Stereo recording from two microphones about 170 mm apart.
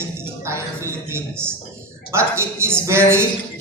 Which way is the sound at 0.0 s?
15° right (ahead or behind).